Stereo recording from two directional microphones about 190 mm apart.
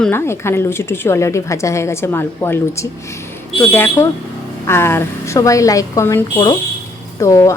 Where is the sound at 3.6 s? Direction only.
10° left (ahead or behind).